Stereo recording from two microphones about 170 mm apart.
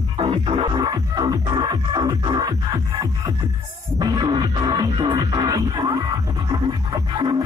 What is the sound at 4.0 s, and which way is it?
Music, 25° right (ahead or behind).